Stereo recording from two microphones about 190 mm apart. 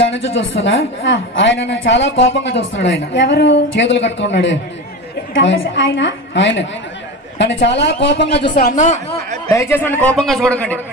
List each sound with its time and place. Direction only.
0.7 s a woman's voice: 75° left (ahead or behind); by 9.0 s 40° left (ahead or behind)
9.5 s a man's voice: 15° left (ahead or behind)